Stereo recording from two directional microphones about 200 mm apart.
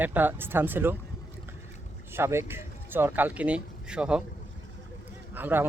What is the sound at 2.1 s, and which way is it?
Speech, 15° right (ahead or behind).